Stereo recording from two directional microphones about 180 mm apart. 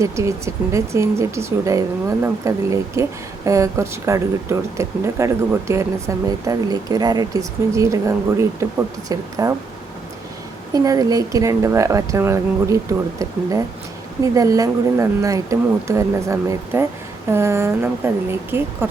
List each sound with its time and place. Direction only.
0.0 s speech: 15° right (ahead or behind)
10.8 s speech: 20° right (ahead or behind)